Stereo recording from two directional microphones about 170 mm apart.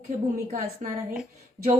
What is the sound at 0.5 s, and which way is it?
Speech, 45° right (ahead or behind).